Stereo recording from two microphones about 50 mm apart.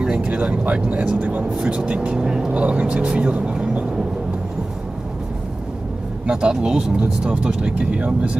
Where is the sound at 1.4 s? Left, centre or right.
Centre.